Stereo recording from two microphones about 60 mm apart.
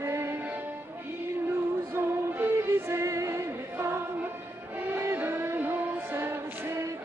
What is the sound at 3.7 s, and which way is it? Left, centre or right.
Music, right.